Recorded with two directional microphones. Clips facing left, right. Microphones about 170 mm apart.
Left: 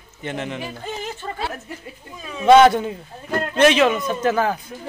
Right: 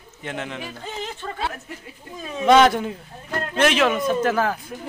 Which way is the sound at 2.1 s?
35° right (ahead or behind).